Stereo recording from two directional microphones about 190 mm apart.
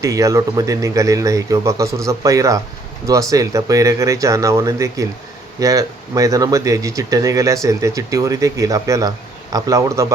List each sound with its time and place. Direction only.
0.0 s speech: 15° right (ahead or behind)